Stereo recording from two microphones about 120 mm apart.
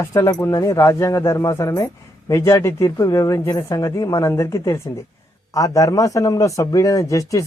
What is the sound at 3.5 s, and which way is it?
Speech, 35° left (ahead or behind).